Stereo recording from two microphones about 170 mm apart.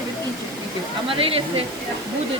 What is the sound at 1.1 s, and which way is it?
Speech, 35° right (ahead or behind).